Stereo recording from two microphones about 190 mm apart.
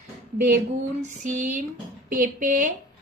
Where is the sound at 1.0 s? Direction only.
40° right (ahead or behind).